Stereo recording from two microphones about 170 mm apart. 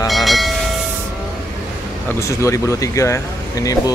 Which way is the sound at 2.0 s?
15° left (ahead or behind).